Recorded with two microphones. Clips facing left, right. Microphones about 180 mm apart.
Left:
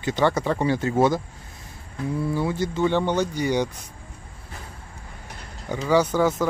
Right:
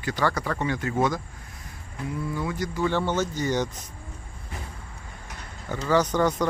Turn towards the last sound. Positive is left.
turn(degrees=5)  # may be behind; listen again after turning